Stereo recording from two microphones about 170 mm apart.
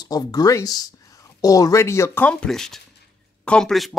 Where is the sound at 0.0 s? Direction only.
25° left (ahead or behind).